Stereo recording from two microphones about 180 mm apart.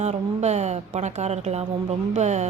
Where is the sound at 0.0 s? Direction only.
40° right (ahead or behind).